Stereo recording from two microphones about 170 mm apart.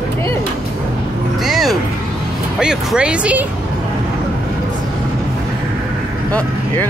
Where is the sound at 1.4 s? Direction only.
Centre (ahead or behind).